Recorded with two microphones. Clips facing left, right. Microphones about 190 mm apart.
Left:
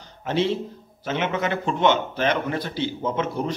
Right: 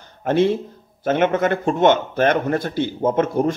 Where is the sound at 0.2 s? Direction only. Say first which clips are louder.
Right 6 dB; 50° right (ahead or behind).